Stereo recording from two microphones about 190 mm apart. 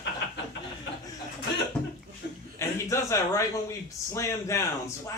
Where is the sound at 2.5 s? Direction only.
15° left (ahead or behind).